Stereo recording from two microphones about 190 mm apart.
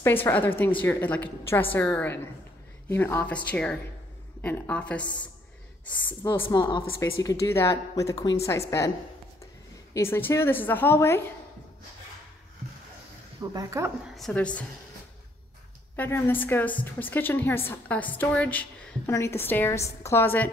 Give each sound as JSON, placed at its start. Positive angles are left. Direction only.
{"t": 0.0, "sound": "a woman's voice", "side_deg": 10}
{"t": 6.5, "sound": "a woman's voice", "side_deg": 20}
{"t": 9.9, "sound": "a woman's voice", "side_deg": 10}
{"t": 13.4, "sound": "speech", "side_deg": -20}
{"t": 14.1, "sound": "a woman's voice", "side_deg": 5}
{"t": 16.0, "sound": "a woman's voice", "side_deg": 10}